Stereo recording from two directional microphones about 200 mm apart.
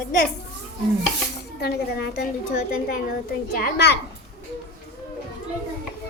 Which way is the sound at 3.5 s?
50° left (ahead or behind).